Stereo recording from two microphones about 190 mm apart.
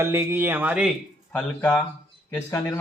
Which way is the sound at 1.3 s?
5° left (ahead or behind).